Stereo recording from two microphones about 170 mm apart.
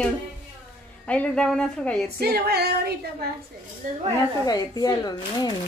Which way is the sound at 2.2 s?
70° right (ahead or behind).